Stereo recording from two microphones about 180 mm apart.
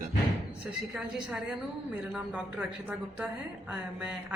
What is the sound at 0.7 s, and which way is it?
Speech, 5° right (ahead or behind).